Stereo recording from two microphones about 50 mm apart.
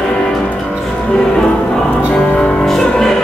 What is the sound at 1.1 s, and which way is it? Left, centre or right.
Music, centre.